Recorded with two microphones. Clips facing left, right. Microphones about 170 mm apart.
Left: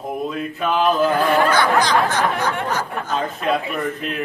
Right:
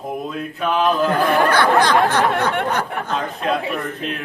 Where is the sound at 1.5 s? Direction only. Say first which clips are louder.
Right 2 dB; 55° right (ahead or behind).